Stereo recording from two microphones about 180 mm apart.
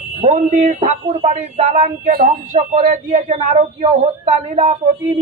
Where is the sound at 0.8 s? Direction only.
30° right (ahead or behind).